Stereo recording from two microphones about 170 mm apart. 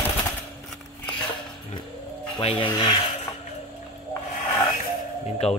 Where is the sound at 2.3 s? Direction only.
30° left (ahead or behind).